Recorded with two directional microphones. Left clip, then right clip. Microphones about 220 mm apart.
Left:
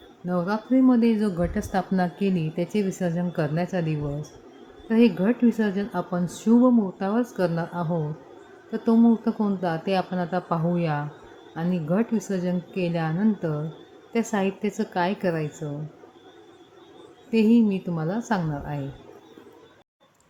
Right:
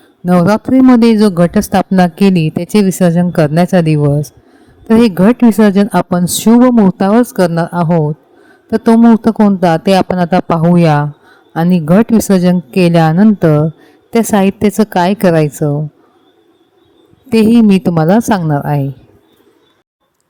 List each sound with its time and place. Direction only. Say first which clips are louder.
0.3 s speech: right 15 dB; 50° right (ahead or behind)
17.2 s speech: right 12 dB; 55° right (ahead or behind)